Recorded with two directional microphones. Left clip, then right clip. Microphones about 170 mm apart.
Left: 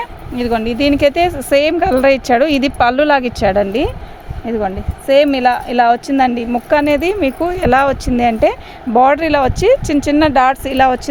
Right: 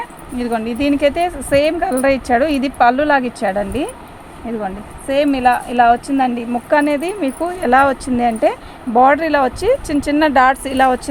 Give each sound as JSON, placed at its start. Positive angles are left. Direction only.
{"t": 0.0, "sound": "speech", "side_deg": 70}